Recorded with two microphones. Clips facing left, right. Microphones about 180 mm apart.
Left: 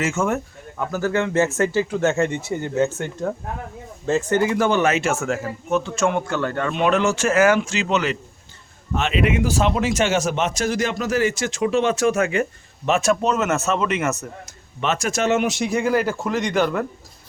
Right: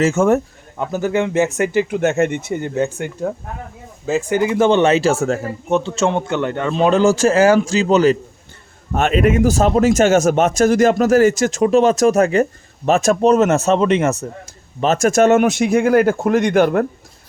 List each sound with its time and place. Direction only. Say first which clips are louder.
0.0 s speech: right 8 dB; 35° right (ahead or behind)
0.8 s speech: right 3 dB; 20° right (ahead or behind)
6.7 s speech: right 7 dB; 30° right (ahead or behind)
8.9 s speech: right 6 dB; 50° right (ahead or behind)